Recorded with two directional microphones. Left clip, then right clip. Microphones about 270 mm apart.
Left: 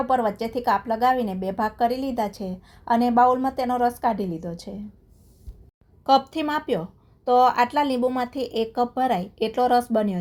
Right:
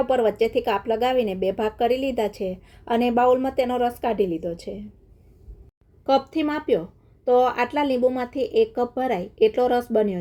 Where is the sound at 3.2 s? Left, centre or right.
Left.